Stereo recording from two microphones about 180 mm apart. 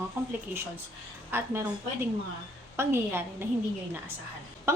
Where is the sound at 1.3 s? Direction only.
10° right (ahead or behind).